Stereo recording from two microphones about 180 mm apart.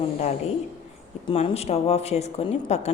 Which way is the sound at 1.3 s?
35° left (ahead or behind).